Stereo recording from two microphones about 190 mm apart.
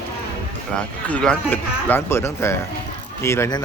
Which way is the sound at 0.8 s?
5° left (ahead or behind).